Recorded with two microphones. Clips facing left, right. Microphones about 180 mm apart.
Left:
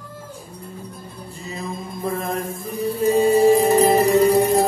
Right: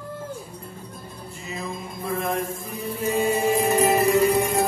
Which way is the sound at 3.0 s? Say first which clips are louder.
Left 7 dB; 35° left (ahead or behind).